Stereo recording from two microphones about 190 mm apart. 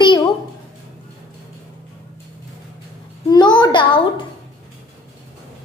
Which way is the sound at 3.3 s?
25° left (ahead or behind).